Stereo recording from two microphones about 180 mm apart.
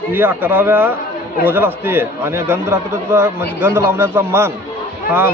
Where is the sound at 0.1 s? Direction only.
10° right (ahead or behind).